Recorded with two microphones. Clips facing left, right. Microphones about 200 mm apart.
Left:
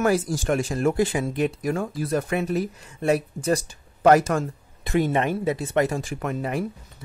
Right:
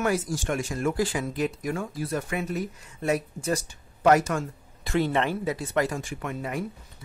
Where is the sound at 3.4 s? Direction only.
35° left (ahead or behind).